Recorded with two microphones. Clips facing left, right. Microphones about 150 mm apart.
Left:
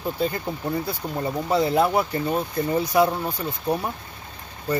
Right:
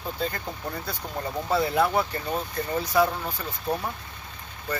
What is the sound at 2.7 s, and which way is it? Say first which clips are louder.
Speech: left 3 dB; 15° left (ahead or behind).